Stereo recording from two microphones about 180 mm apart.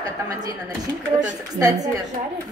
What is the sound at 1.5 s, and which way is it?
Speech, 20° right (ahead or behind).